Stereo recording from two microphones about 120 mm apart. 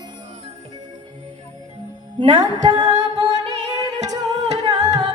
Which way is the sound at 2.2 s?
35° right (ahead or behind).